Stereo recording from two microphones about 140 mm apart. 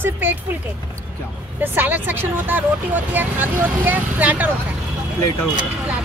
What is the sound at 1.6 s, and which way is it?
Speech, 15° right (ahead or behind).